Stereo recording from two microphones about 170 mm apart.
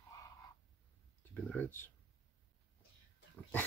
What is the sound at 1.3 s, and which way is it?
Speech, 10° left (ahead or behind).